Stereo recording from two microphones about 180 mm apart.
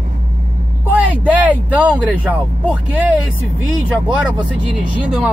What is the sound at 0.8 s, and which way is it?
Speech, 10° right (ahead or behind).